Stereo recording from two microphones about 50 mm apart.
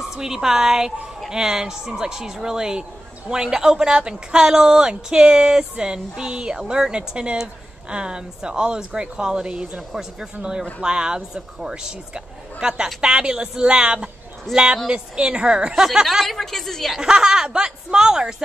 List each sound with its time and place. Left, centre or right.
0.1 s speech: centre
15.7 s speech: centre
17.0 s speech: centre